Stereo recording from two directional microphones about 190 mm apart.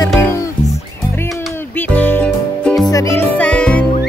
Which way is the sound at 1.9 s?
10° left (ahead or behind).